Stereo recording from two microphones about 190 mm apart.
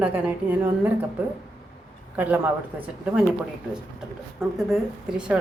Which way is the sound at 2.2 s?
10° right (ahead or behind).